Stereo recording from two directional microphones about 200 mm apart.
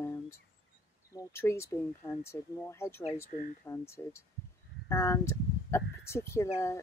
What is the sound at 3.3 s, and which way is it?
Speech, 40° left (ahead or behind).